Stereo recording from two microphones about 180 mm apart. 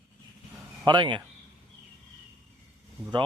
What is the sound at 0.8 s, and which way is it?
Speech, 25° right (ahead or behind).